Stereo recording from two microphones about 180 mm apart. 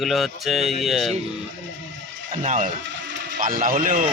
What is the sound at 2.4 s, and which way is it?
Speech, 45° right (ahead or behind).